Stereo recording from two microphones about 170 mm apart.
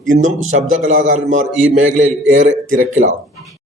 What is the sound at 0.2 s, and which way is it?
A man's voice, 50° right (ahead or behind).